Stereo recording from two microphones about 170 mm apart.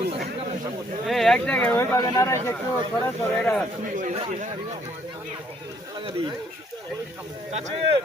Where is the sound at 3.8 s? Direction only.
50° right (ahead or behind).